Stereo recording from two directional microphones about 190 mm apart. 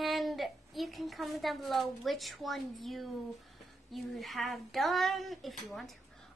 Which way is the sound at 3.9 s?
Centre (ahead or behind).